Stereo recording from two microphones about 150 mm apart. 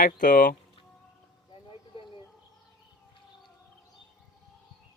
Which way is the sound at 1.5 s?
35° left (ahead or behind).